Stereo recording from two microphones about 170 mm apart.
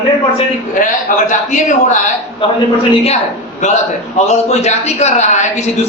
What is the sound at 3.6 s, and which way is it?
A man's voice, 45° left (ahead or behind).